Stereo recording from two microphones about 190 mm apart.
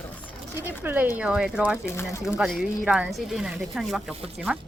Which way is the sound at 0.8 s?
10° right (ahead or behind).